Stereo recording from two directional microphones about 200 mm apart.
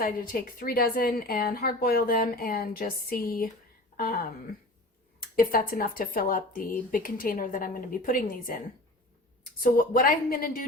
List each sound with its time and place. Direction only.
0.0 s speech: 45° left (ahead or behind)
5.4 s speech: 45° left (ahead or behind)
9.6 s speech: 45° left (ahead or behind)